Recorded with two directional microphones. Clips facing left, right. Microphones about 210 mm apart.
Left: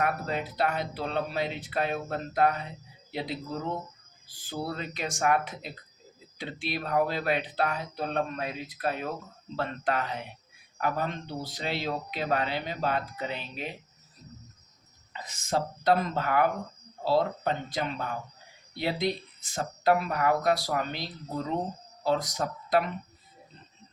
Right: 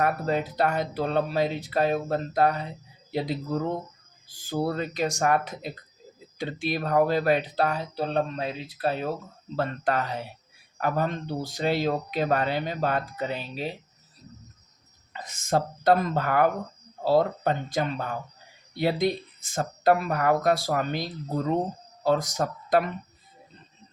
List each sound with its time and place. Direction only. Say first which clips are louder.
0.0 s speech: right 4 dB; 40° right (ahead or behind)
4.4 s speech: right 7 dB; 45° right (ahead or behind)
9.6 s speech: right 3 dB; 40° right (ahead or behind)
15.1 s speech: right 4 dB; 50° right (ahead or behind)